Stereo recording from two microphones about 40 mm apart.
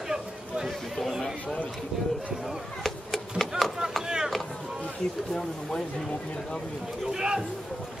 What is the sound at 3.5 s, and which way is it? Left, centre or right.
Chop, centre.